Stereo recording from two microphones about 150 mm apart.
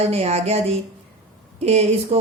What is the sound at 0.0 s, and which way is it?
Speech, 45° right (ahead or behind).